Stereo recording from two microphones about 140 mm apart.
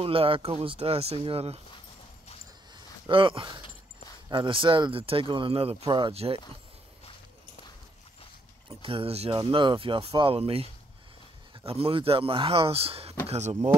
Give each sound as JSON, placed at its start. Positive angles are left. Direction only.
{"t": 0.0, "sound": "speech", "side_deg": -40}
{"t": 2.7, "sound": "a sound", "side_deg": -35}
{"t": 4.3, "sound": "speech", "side_deg": -35}
{"t": 8.6, "sound": "speech", "side_deg": -40}